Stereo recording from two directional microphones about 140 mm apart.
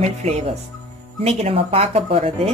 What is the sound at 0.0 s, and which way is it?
Speech, 50° right (ahead or behind).